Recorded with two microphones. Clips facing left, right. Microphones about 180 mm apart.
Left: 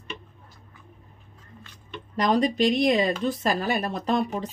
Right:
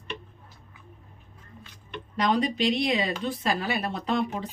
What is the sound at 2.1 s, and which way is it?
Speech, 40° left (ahead or behind).